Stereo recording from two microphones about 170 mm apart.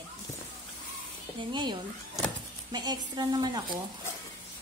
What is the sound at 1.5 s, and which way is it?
Speech, 25° right (ahead or behind).